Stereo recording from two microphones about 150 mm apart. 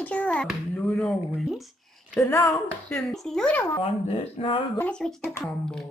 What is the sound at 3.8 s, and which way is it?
Speech, 35° left (ahead or behind).